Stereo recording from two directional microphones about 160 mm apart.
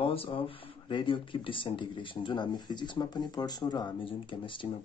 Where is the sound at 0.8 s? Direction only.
30° left (ahead or behind).